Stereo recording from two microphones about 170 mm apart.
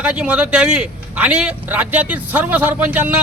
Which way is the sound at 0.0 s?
5° right (ahead or behind).